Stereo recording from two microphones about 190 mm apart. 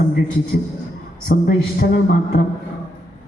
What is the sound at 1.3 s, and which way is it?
Speech, 55° left (ahead or behind).